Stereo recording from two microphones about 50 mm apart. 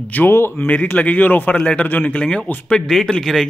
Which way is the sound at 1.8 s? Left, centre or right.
Left.